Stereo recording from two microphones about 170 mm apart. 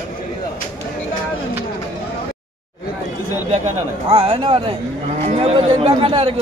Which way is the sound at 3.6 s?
35° right (ahead or behind).